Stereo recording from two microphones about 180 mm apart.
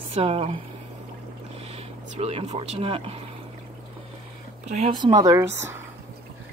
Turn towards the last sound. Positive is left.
turn(degrees=-15)  # may be behind; listen again after turning